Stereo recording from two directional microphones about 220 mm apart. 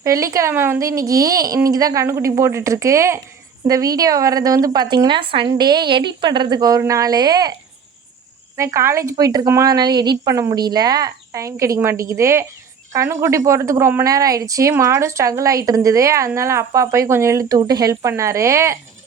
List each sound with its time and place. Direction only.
0.0 s a woman's voice: 15° right (ahead or behind)
8.5 s a woman's voice: 15° right (ahead or behind)